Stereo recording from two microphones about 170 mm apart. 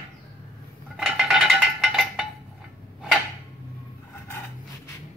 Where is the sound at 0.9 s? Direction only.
5° right (ahead or behind).